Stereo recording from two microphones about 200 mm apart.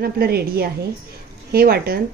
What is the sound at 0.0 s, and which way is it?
Speech, 50° right (ahead or behind).